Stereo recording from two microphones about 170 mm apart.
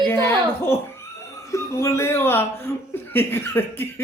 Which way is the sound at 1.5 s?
15° left (ahead or behind).